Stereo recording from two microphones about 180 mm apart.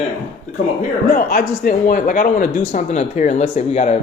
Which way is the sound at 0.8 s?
50° left (ahead or behind).